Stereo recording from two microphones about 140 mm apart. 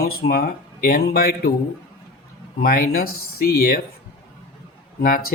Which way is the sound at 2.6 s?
90° left.